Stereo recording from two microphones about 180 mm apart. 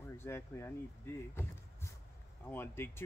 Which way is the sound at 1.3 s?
15° left (ahead or behind).